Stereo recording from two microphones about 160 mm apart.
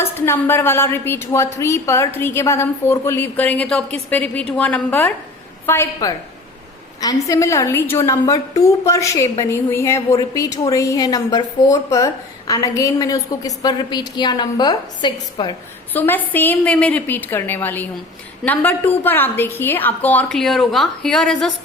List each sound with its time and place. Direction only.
0.0 s a woman's voice: 15° left (ahead or behind)
15.9 s a woman's voice: 10° left (ahead or behind)